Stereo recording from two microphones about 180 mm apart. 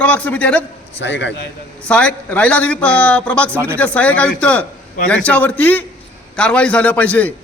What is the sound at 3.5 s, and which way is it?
Speech, 15° right (ahead or behind).